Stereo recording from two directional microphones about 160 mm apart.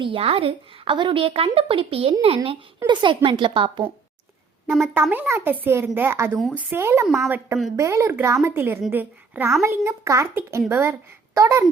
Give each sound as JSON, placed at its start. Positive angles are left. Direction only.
{"t": 0.0, "sound": "speech", "side_deg": -35}
{"t": 4.6, "sound": "a child's voice", "side_deg": -10}